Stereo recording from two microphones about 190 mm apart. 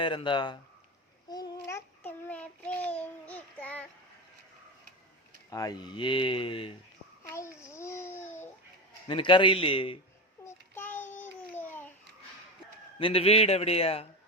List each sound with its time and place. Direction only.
0.0 s speech: 25° left (ahead or behind)
1.3 s child singing: 20° left (ahead or behind)
5.5 s speech: 20° left (ahead or behind)
7.3 s babbling: 15° left (ahead or behind)
9.0 s speech: 25° left (ahead or behind)
10.4 s a sound: 10° left (ahead or behind)
13.0 s a man's voice: 30° left (ahead or behind)